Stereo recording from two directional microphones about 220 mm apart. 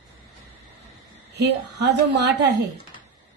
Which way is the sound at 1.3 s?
50° right (ahead or behind).